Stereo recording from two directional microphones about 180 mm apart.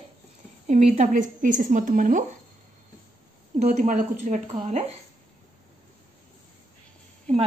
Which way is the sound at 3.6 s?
40° right (ahead or behind).